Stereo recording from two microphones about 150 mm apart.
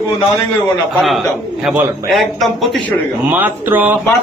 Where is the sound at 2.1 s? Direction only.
Centre (ahead or behind).